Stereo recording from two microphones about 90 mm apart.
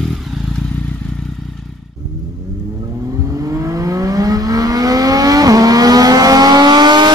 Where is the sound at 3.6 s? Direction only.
40° right (ahead or behind).